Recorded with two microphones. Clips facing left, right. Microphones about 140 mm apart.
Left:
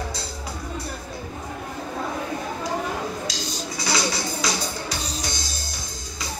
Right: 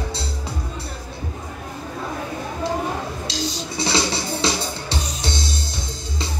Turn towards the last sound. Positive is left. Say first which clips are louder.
# right 6 dB
turn(degrees=-25)  # may be behind; listen again after turning